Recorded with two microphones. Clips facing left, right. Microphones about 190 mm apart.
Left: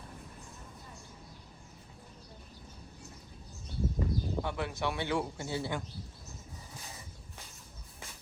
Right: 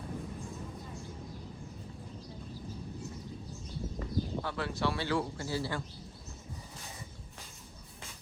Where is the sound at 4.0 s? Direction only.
20° left (ahead or behind).